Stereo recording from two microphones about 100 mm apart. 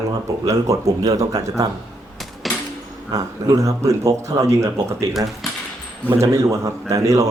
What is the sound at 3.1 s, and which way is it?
A man's voice, 35° right (ahead or behind).